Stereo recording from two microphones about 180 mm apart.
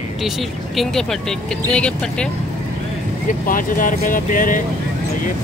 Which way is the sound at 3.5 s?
50° left (ahead or behind).